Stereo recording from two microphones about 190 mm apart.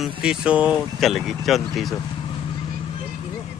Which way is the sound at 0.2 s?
5° right (ahead or behind).